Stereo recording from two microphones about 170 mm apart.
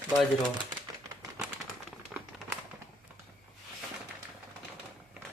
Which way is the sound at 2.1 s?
Centre (ahead or behind).